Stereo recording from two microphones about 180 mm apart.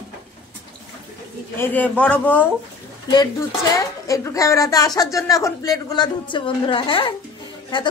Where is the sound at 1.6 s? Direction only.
10° left (ahead or behind).